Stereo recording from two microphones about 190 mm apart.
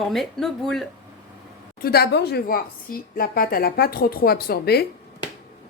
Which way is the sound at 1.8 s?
55° left (ahead or behind).